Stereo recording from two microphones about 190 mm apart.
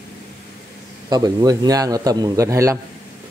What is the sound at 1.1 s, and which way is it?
A man's voice, 20° right (ahead or behind).